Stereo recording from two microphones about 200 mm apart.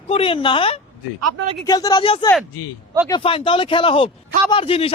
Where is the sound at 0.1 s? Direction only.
25° left (ahead or behind).